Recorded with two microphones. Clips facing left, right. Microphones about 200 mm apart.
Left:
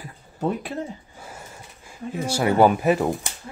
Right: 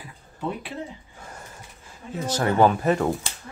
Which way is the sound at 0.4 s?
45° left (ahead or behind).